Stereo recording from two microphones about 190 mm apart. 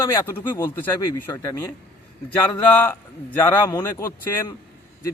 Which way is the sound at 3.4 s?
20° left (ahead or behind).